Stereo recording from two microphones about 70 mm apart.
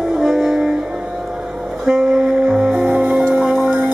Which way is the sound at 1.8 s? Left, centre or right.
Centre.